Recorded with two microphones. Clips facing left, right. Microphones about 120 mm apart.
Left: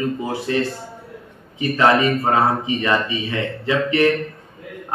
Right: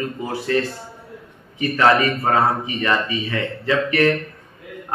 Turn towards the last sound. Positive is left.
turn(degrees=20)  # may be behind; listen again after turning